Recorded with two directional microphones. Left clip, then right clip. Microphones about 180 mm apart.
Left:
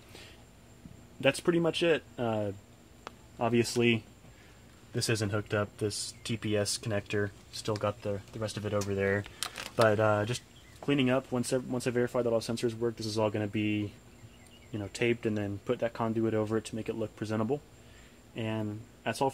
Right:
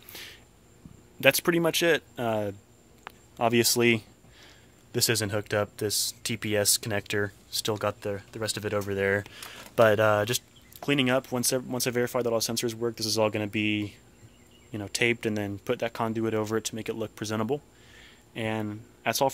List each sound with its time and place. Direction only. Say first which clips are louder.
1.2 s speech: right 5 dB; 20° right (ahead or behind)